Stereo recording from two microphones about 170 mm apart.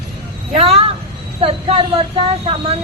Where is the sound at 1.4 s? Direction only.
35° right (ahead or behind).